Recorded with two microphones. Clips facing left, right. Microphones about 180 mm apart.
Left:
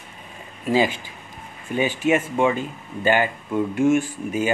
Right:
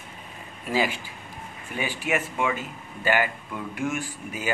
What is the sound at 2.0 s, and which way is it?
Speech, 30° left (ahead or behind).